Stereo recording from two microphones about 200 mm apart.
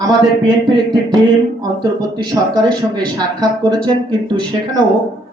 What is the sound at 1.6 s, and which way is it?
Speech, 20° right (ahead or behind).